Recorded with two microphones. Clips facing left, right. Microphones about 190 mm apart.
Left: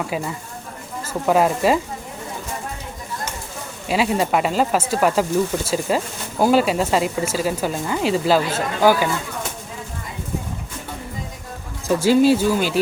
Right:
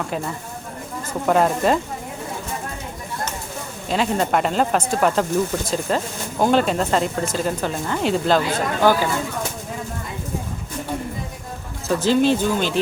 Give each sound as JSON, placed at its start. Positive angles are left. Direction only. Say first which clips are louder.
{"t": 1.3, "sound": "speech", "louder": "left 1 dB", "side_deg": 5}
{"t": 3.8, "sound": "speech", "louder": "left 1 dB", "side_deg": 5}
{"t": 11.9, "sound": "speech", "louder": "left 3 dB", "side_deg": 10}